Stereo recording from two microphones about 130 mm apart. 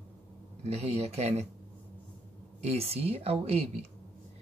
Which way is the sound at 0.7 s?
50° right (ahead or behind).